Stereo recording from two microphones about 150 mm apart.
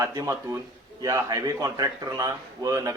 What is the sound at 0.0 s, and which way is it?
A man's voice, 20° right (ahead or behind).